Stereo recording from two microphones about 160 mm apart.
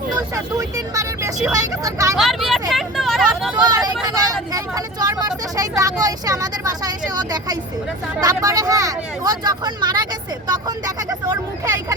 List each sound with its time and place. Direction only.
0.5 s speech: 20° right (ahead or behind)
2.1 s speech: centre (ahead or behind)
3.5 s speech: 25° right (ahead or behind)